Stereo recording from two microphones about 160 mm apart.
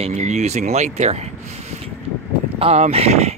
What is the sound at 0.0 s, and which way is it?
Speech, 45° right (ahead or behind).